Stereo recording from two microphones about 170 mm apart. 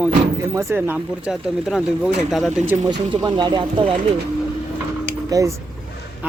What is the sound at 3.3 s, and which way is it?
Speech, 25° right (ahead or behind).